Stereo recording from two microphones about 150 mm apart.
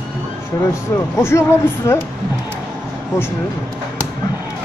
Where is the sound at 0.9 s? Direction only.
20° left (ahead or behind).